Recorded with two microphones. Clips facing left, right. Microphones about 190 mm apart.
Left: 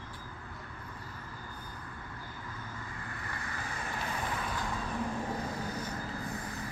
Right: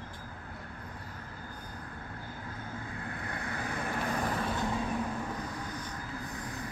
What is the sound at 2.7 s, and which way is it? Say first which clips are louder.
Vehicle: right 4 dB; 55° right (ahead or behind).